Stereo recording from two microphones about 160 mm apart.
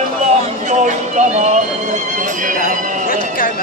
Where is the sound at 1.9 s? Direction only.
55° right (ahead or behind).